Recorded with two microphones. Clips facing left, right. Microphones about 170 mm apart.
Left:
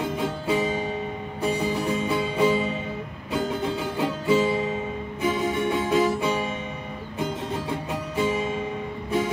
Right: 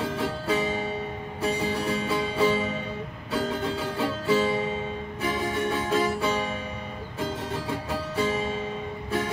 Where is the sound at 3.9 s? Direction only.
15° left (ahead or behind).